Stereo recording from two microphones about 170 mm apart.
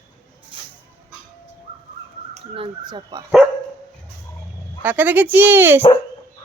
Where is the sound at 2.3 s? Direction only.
30° right (ahead or behind).